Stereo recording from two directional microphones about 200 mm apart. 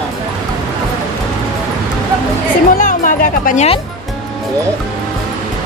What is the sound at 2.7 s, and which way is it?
Speech, 40° left (ahead or behind).